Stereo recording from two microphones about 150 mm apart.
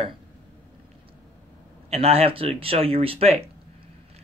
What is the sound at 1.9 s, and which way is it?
Speech, 40° right (ahead or behind).